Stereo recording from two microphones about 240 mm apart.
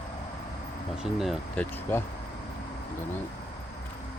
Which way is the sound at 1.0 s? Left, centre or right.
Centre.